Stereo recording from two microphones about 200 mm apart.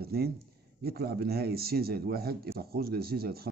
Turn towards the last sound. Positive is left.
turn(degrees=-50)  # may be behind; listen again after turning